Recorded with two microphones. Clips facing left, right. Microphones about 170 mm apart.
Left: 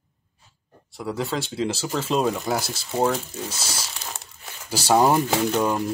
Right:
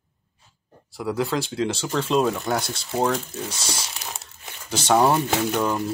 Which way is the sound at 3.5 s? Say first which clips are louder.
Right 1 dB; 25° left (ahead or behind).